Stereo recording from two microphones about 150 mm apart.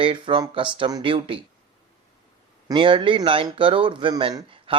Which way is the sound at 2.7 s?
35° right (ahead or behind).